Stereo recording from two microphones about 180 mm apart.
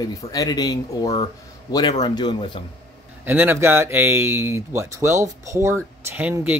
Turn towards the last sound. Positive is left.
turn(degrees=-10)  # may be behind; listen again after turning